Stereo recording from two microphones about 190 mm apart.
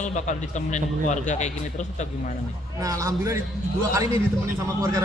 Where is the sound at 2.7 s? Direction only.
15° right (ahead or behind).